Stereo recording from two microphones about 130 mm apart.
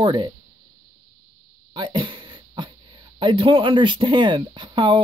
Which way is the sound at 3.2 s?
40° right (ahead or behind).